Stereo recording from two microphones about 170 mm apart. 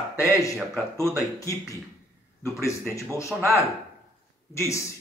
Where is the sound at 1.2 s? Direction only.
20° left (ahead or behind).